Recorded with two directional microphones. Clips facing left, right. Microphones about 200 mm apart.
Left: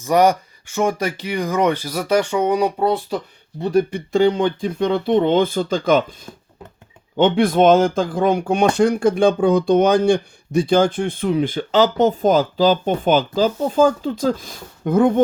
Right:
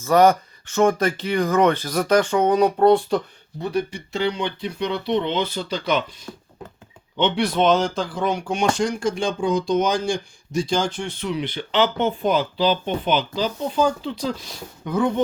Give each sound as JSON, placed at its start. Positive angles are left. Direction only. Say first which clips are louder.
{"t": 0.0, "sound": "speech", "louder": "even", "side_deg": 15}
{"t": 3.7, "sound": "speech", "louder": "left 8 dB", "side_deg": 50}
{"t": 6.3, "sound": "a sound", "louder": "right 2 dB", "side_deg": 20}
{"t": 7.2, "sound": "speech", "louder": "left 6 dB", "side_deg": 50}